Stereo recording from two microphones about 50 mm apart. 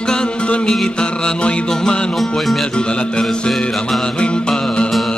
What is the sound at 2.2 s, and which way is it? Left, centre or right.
Music, centre.